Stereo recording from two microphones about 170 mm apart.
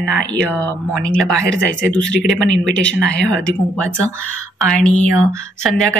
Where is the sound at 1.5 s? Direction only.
90° right.